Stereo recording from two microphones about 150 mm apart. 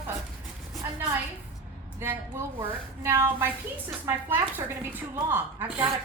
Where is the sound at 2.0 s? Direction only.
15° right (ahead or behind).